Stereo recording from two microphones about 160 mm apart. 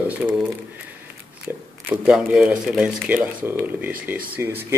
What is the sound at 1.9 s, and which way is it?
Speech, 5° right (ahead or behind).